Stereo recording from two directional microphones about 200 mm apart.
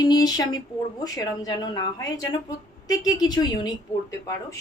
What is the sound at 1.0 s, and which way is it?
Speech, 20° left (ahead or behind).